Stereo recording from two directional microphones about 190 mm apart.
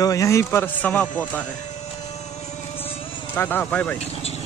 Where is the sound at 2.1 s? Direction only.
35° left (ahead or behind).